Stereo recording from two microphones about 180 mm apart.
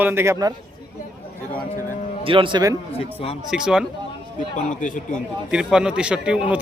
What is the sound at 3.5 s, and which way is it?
Speech, 5° right (ahead or behind).